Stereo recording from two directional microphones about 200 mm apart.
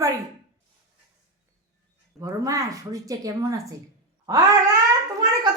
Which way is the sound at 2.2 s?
15° right (ahead or behind).